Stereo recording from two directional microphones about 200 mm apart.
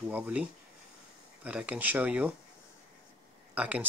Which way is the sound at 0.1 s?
10° right (ahead or behind).